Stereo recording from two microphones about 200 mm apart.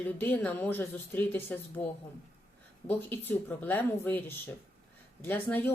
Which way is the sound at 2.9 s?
10° left (ahead or behind).